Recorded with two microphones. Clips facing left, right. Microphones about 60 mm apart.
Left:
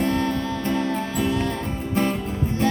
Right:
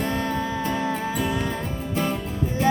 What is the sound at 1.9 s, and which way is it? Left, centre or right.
Music, left.